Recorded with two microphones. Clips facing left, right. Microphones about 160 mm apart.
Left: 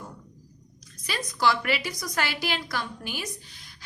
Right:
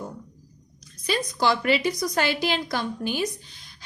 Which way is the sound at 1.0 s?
25° right (ahead or behind).